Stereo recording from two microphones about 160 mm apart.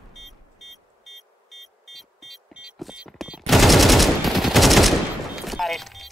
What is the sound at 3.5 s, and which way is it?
Gunshot, centre (ahead or behind).